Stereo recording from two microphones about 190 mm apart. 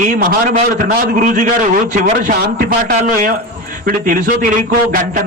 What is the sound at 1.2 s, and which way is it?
A man's voice, 40° right (ahead or behind).